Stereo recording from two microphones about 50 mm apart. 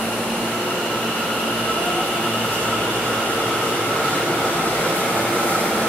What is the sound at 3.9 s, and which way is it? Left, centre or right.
Train, centre.